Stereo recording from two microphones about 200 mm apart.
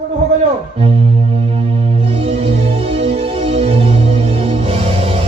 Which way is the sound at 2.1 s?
30° right (ahead or behind).